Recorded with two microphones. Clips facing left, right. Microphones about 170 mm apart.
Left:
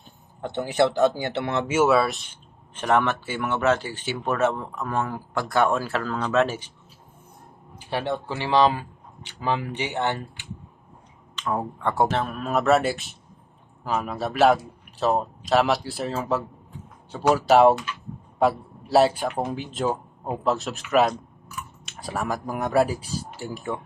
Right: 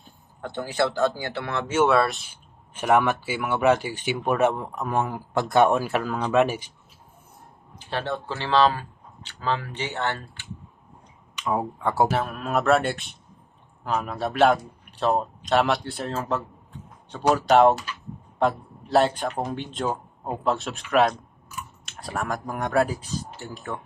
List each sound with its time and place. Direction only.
0.4 s speech: 20° left (ahead or behind)
1.6 s speech: 5° left (ahead or behind)
2.3 s speech: 10° right (ahead or behind)
7.8 s speech: 10° left (ahead or behind)
11.3 s a man's voice: 10° right (ahead or behind); by 23.8 s 10° left (ahead or behind)